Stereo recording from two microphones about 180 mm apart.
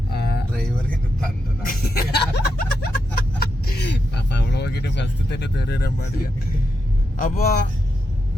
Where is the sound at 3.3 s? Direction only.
60° left (ahead or behind).